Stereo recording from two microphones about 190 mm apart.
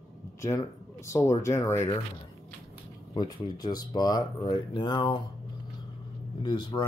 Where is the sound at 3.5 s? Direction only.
20° left (ahead or behind).